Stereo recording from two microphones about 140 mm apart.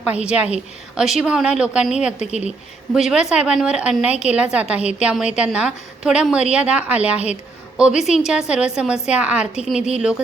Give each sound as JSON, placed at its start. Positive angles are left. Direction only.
{"t": 0.0, "sound": "a woman's voice", "side_deg": -5}
{"t": 2.1, "sound": "speech", "side_deg": 55}
{"t": 2.9, "sound": "a woman's voice", "side_deg": -5}